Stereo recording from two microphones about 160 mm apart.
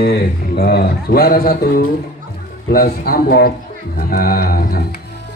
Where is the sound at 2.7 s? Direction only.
70° left (ahead or behind).